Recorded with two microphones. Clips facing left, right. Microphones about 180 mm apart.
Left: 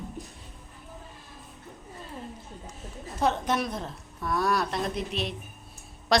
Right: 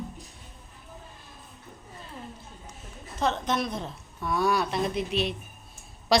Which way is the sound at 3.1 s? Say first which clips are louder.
Left 1 dB; 10° left (ahead or behind).